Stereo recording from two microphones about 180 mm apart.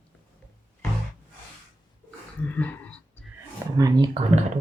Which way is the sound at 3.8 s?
25° right (ahead or behind).